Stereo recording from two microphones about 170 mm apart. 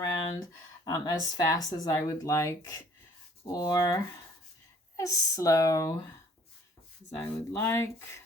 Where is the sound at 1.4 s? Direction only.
20° left (ahead or behind).